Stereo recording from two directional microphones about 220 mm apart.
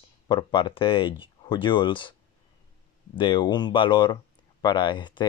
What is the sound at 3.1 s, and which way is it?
Speech, 20° left (ahead or behind).